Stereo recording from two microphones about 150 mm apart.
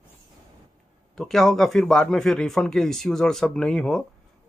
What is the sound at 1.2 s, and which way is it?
A man's voice, centre (ahead or behind).